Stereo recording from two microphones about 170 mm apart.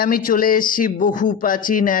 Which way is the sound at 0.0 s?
55° left (ahead or behind).